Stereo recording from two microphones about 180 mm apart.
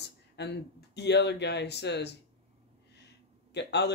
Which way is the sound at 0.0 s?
70° left (ahead or behind).